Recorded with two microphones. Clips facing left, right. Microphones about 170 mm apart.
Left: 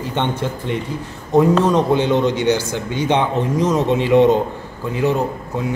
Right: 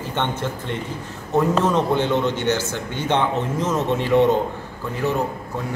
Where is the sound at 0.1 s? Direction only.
15° left (ahead or behind).